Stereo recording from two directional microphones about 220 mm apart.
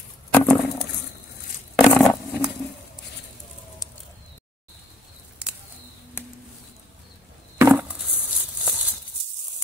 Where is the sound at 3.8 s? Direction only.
15° left (ahead or behind).